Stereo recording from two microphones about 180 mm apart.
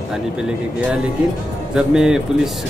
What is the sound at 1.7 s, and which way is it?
Speech, 5° right (ahead or behind).